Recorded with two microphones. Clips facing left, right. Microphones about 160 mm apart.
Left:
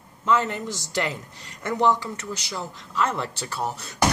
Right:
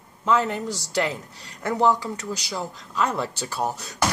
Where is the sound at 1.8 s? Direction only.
10° right (ahead or behind).